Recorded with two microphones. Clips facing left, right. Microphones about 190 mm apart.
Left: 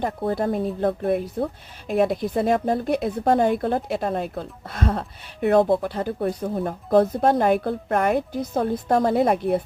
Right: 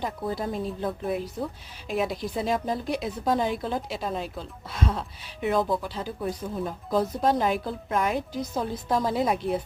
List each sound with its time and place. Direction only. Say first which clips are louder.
0.3 s speech: left 7 dB; 55° left (ahead or behind)